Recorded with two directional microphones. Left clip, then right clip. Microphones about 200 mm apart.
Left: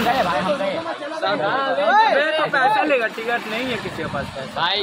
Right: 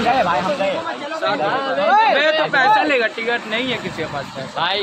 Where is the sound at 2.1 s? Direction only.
50° right (ahead or behind).